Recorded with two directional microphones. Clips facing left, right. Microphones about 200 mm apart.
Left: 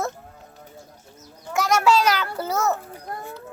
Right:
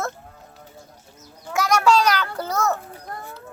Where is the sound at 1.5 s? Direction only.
Centre (ahead or behind).